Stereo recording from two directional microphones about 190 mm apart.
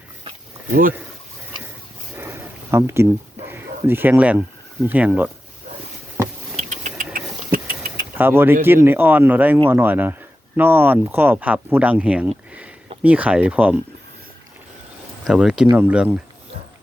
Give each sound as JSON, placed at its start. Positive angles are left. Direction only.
{"t": 0.7, "sound": "speech", "side_deg": -45}
{"t": 2.1, "sound": "a sound", "side_deg": -10}
{"t": 3.5, "sound": "speech", "side_deg": -10}
{"t": 6.6, "sound": "a sound", "side_deg": -40}
{"t": 7.0, "sound": "engine", "side_deg": -45}
{"t": 8.1, "sound": "speech", "side_deg": -10}
{"t": 15.2, "sound": "speech", "side_deg": -5}